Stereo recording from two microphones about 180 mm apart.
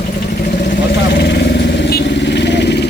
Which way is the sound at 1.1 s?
65° left (ahead or behind).